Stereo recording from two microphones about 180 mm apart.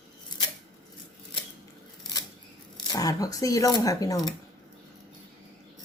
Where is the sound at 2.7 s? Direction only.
25° left (ahead or behind).